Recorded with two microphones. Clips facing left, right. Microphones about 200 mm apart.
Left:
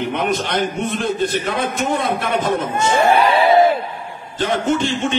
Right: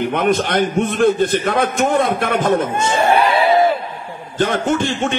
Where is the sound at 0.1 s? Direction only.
50° right (ahead or behind).